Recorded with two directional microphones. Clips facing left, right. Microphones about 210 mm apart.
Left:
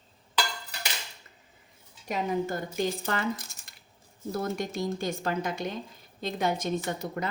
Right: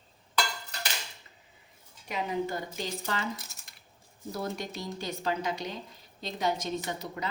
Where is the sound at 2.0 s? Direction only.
45° left (ahead or behind).